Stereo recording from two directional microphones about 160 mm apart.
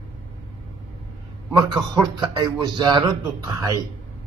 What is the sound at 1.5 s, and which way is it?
A man's voice, 25° right (ahead or behind).